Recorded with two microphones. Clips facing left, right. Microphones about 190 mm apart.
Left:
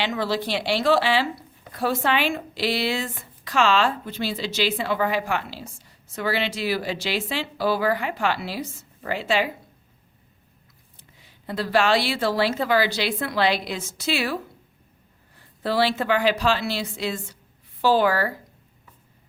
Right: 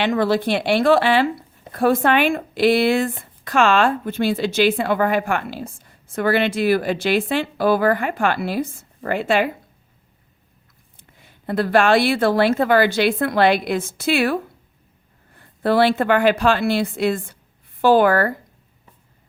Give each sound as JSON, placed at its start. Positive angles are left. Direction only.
{"t": 0.0, "sound": "speech", "side_deg": -55}
{"t": 10.9, "sound": "speech", "side_deg": -55}
{"t": 15.4, "sound": "speech", "side_deg": -55}